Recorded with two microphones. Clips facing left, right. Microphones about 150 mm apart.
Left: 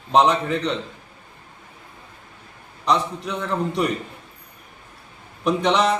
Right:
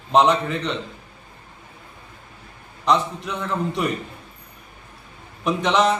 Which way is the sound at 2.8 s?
Centre (ahead or behind).